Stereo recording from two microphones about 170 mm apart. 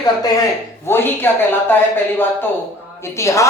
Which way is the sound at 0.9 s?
15° left (ahead or behind).